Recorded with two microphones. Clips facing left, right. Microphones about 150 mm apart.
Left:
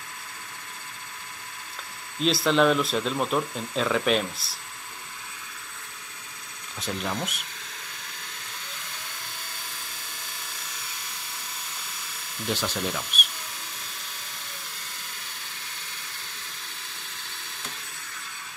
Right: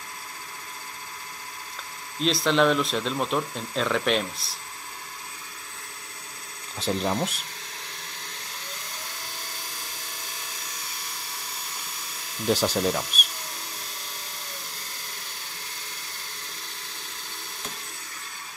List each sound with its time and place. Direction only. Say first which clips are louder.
2.1 s speech: even; centre (ahead or behind)
6.8 s speech: right 5 dB; 35° right (ahead or behind)
12.4 s speech: right 6 dB; 40° right (ahead or behind)